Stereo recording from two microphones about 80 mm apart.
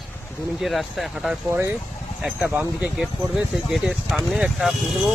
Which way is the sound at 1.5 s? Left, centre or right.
Right.